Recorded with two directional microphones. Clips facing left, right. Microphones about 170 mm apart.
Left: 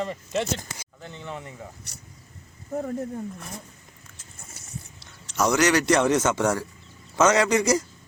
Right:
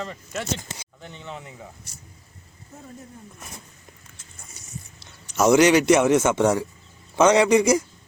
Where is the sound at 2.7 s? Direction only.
75° left (ahead or behind).